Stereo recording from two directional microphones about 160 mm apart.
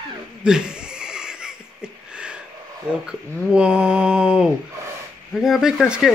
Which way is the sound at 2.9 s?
5° right (ahead or behind).